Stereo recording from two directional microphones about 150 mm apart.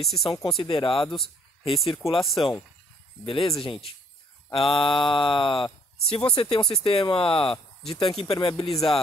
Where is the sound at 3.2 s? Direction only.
35° left (ahead or behind).